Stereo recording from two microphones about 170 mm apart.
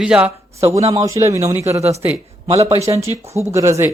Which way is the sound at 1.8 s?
40° right (ahead or behind).